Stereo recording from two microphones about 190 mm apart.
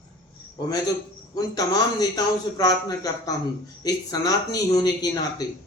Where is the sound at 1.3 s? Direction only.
20° left (ahead or behind).